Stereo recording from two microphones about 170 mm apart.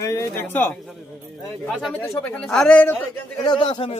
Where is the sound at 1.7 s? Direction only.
Centre (ahead or behind).